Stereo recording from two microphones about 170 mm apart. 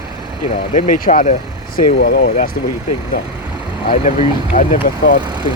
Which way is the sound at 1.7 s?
60° left (ahead or behind).